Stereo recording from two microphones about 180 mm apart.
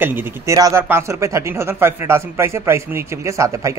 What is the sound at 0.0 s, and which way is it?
Speech, 10° right (ahead or behind).